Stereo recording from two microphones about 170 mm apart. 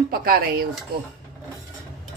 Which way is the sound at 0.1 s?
60° right (ahead or behind).